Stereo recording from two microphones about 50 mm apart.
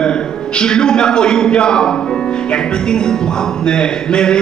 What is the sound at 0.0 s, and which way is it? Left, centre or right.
A man's voice, centre.